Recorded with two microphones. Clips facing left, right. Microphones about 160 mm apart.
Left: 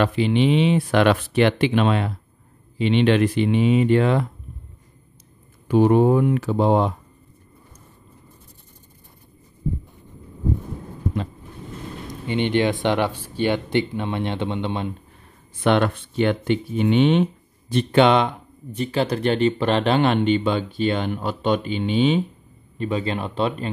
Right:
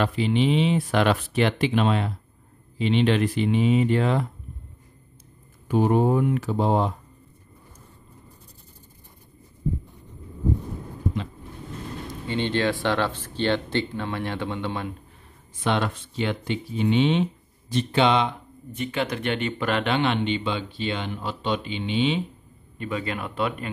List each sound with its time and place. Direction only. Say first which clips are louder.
0.0 s speech: left 3 dB; 70° left (ahead or behind)
5.7 s speech: left 5 dB; 90° left; by 6.9 s 75° left (ahead or behind)
12.3 s speech: left 4 dB; 15° left (ahead or behind)
15.6 s speech: left 6 dB; 60° left (ahead or behind)
18.7 s speech: left 5 dB; 35° left (ahead or behind)
22.8 s speech: left 5 dB; 30° left (ahead or behind)